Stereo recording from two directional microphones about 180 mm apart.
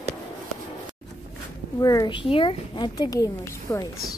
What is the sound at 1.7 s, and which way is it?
A woman's voice, 20° left (ahead or behind).